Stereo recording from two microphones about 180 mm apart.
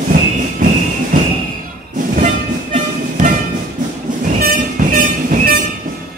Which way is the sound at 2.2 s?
45° right (ahead or behind).